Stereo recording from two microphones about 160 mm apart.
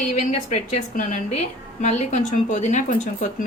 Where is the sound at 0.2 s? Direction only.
50° left (ahead or behind).